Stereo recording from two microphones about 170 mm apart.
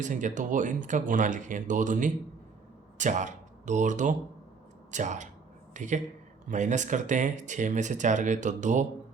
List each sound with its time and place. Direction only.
0.0 s speech: 45° right (ahead or behind)